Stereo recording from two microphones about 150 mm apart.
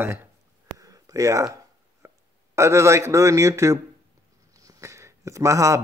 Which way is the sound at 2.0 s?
20° right (ahead or behind).